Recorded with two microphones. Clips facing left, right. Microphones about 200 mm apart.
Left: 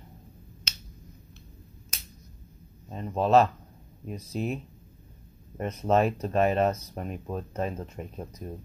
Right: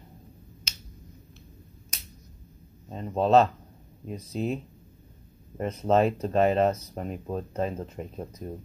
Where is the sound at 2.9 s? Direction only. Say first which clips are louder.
Right 1 dB; 30° right (ahead or behind).